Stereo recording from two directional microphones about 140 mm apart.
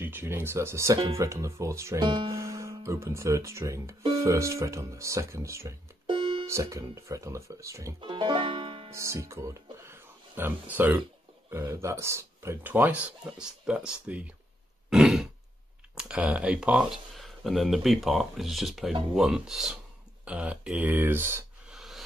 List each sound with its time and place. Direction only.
0.0 s speech: 15° right (ahead or behind)
6.0 s music: 40° right (ahead or behind)
6.4 s speech: 20° right (ahead or behind)
8.0 s music: 35° right (ahead or behind)
8.9 s speech: 20° right (ahead or behind)
14.9 s grunt: 5° right (ahead or behind)
15.9 s speech: 5° right (ahead or behind)
21.6 s a sound: centre (ahead or behind)